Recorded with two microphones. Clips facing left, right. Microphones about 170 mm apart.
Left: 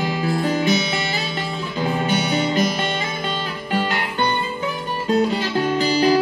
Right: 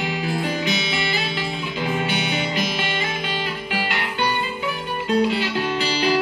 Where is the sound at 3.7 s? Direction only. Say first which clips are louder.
Left 7 dB; 40° left (ahead or behind).